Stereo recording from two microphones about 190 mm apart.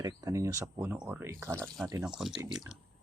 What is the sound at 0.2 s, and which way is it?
Speech, 15° right (ahead or behind).